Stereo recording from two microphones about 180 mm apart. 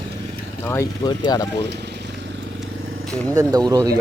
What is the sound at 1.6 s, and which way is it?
Vehicle, 70° right (ahead or behind).